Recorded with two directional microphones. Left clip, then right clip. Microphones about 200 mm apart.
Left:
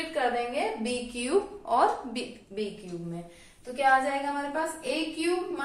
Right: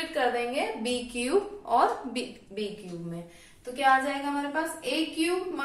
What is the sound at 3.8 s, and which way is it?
A woman's voice, centre (ahead or behind).